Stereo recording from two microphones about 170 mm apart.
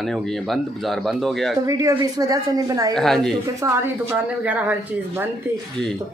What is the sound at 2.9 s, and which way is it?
Speech, centre (ahead or behind).